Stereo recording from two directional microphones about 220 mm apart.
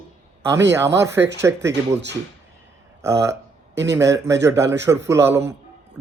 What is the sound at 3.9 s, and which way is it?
A man's voice, 15° right (ahead or behind).